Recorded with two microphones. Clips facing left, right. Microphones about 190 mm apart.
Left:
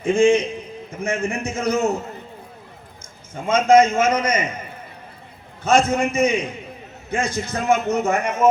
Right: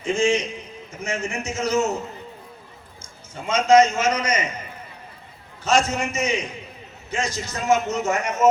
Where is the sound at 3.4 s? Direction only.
55° left (ahead or behind).